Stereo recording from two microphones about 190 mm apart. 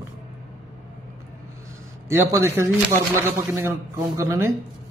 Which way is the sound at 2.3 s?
15° right (ahead or behind).